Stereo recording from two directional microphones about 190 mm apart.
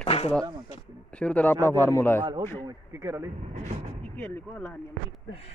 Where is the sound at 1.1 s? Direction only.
5° left (ahead or behind).